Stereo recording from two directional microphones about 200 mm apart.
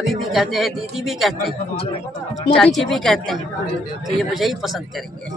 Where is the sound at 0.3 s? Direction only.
Centre (ahead or behind).